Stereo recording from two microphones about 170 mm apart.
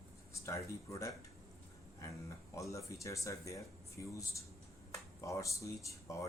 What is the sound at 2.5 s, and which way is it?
Speech, 20° left (ahead or behind).